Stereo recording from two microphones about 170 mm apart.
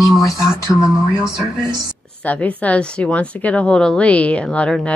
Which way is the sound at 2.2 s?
10° left (ahead or behind).